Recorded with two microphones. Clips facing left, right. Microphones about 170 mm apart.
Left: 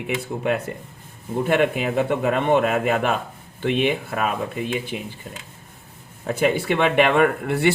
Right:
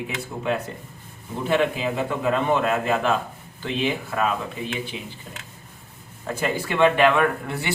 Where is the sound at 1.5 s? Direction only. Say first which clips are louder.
Left 1 dB; 60° left (ahead or behind).